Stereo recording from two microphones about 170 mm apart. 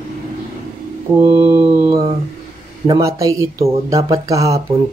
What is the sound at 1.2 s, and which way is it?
Speech, 15° right (ahead or behind).